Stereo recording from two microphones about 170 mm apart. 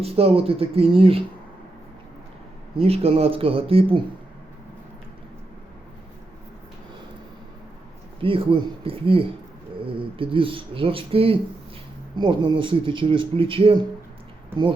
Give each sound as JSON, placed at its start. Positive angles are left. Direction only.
{"t": 0.0, "sound": "speech", "side_deg": -35}
{"t": 2.7, "sound": "speech", "side_deg": -35}
{"t": 8.2, "sound": "speech", "side_deg": -30}